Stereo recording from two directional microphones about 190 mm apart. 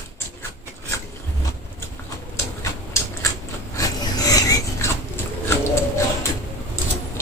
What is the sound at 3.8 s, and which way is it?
Filing, 20° left (ahead or behind).